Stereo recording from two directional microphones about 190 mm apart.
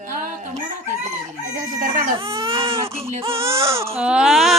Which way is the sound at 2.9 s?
30° right (ahead or behind).